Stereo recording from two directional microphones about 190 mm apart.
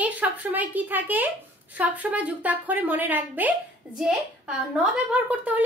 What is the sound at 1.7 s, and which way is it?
A woman's voice, 10° right (ahead or behind).